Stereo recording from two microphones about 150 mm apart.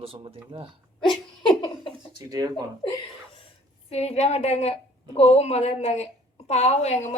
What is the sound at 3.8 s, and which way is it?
A woman's voice, 45° left (ahead or behind).